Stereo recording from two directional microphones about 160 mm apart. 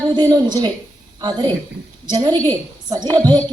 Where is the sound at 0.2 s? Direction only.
25° right (ahead or behind).